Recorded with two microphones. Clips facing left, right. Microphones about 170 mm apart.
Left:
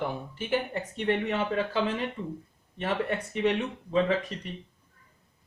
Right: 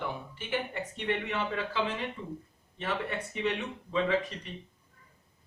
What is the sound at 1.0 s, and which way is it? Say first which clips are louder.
Speech: left 5 dB; 40° left (ahead or behind).